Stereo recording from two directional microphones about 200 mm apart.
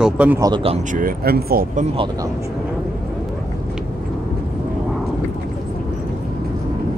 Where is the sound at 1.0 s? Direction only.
50° right (ahead or behind).